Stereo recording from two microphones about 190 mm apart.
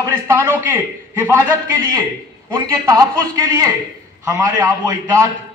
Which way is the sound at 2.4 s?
20° right (ahead or behind).